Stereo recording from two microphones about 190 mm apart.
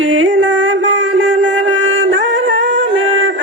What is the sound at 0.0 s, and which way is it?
Music, 80° right.